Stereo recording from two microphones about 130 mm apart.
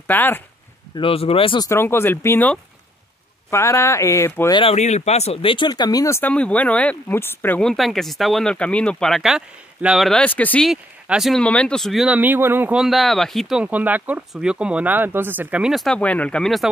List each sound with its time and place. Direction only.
0.0 s speech: 15° left (ahead or behind)
0.9 s speech: 45° left (ahead or behind)
1.6 s speech: 20° left (ahead or behind)
4.7 s speech: 60° left (ahead or behind); by 6.3 s 20° left (ahead or behind)
6.3 s speech: 10° left (ahead or behind)
7.6 s speech: centre (ahead or behind)
10.6 s speech: 5° right (ahead or behind)
12.2 s speech: 15° right (ahead or behind)
12.7 s speech: centre (ahead or behind)
15.7 s speech: 5° left (ahead or behind)